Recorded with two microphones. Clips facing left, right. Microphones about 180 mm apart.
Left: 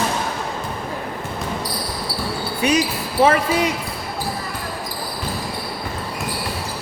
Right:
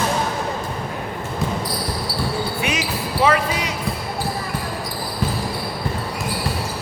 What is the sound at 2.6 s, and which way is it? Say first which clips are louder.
Basketball bounce: left 5 dB; 40° left (ahead or behind).